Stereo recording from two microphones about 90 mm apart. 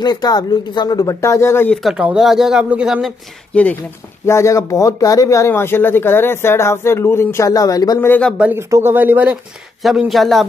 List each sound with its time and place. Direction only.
0.0 s speech: 50° left (ahead or behind)
1.2 s speech: 30° left (ahead or behind)
1.7 s speech: centre (ahead or behind)
3.5 s speech: 15° left (ahead or behind)
4.3 s speech: 35° left (ahead or behind)
8.5 s speech: 30° right (ahead or behind)
8.9 s speech: 20° right (ahead or behind)
9.8 s speech: centre (ahead or behind)